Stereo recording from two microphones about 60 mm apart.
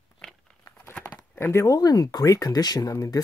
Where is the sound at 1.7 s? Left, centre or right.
Left.